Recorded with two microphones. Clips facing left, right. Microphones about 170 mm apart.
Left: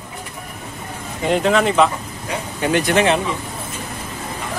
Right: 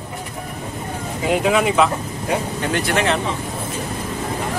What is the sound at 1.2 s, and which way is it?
Speech, 5° right (ahead or behind).